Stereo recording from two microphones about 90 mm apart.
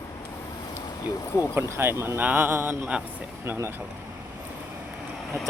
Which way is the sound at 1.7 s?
25° right (ahead or behind).